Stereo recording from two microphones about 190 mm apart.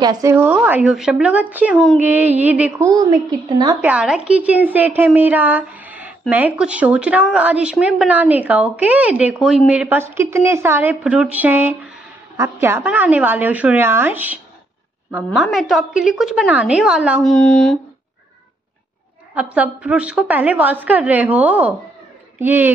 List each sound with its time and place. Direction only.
0.0 s a woman's voice: 20° right (ahead or behind)
2.9 s a woman's voice: 20° right (ahead or behind)
3.8 s a woman's voice: 5° right (ahead or behind)
19.3 s a woman's voice: 5° right (ahead or behind)